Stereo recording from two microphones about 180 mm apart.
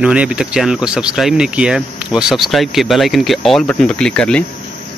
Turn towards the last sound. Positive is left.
turn(degrees=5)  # may be behind; listen again after turning